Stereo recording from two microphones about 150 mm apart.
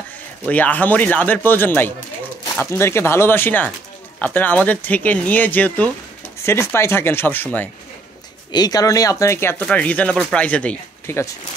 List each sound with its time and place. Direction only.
0.5 s speech: 10° left (ahead or behind)
8.5 s speech: 25° left (ahead or behind)